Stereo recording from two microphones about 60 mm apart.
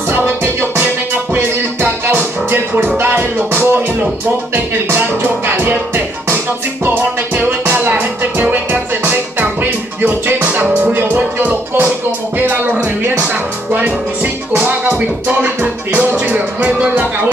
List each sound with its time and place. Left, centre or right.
0.1 s music: right
5.6 s music: right
11.0 s music: right